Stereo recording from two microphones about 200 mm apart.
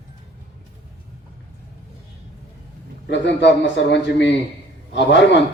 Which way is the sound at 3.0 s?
60° left (ahead or behind).